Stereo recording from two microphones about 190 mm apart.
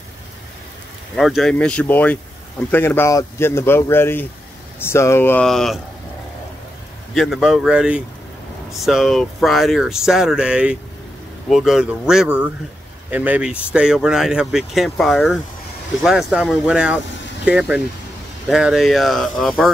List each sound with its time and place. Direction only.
1.1 s speech: centre (ahead or behind)
7.2 s speech: centre (ahead or behind)